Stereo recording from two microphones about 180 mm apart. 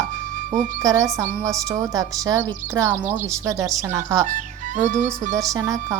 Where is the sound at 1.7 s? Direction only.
20° right (ahead or behind).